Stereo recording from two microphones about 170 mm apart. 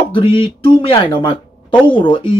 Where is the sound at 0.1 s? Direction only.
30° left (ahead or behind).